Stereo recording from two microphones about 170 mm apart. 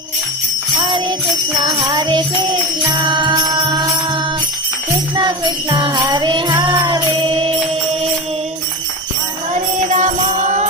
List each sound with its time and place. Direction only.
1.6 s music: 25° right (ahead or behind)
5.7 s music: 30° right (ahead or behind)
9.9 s music: 45° right (ahead or behind)